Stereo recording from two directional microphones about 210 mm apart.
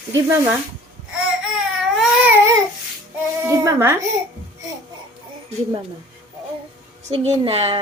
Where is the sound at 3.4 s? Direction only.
10° right (ahead or behind).